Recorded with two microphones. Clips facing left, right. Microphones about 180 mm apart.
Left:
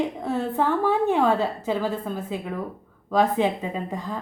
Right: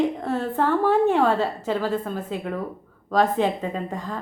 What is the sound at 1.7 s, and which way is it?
Speech, centre (ahead or behind).